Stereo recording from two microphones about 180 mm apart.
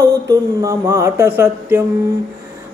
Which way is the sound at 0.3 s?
20° right (ahead or behind).